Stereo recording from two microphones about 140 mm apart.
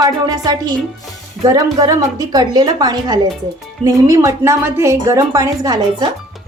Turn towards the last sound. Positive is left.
turn(degrees=-25)  # may be behind; listen again after turning